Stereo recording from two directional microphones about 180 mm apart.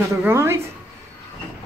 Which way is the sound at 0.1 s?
15° right (ahead or behind).